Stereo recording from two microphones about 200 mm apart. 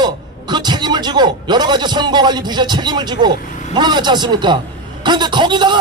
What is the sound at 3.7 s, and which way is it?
A man's voice, 20° right (ahead or behind).